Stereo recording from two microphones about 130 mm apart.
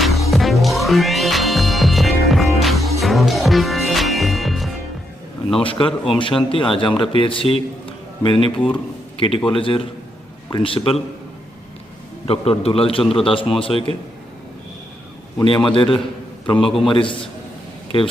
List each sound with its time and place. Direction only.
0.0 s music: centre (ahead or behind)
5.5 s a man's voice: 40° left (ahead or behind)
12.3 s a man's voice: 50° left (ahead or behind)
15.4 s a man's voice: 40° left (ahead or behind)